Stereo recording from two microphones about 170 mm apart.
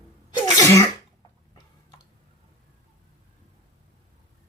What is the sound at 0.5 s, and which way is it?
Sneeze, 20° left (ahead or behind).